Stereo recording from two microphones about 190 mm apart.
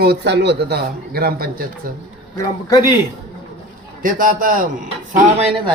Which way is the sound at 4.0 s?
45° right (ahead or behind).